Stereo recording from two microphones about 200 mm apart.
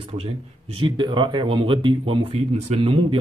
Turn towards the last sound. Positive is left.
turn(degrees=-30)  # may be behind; listen again after turning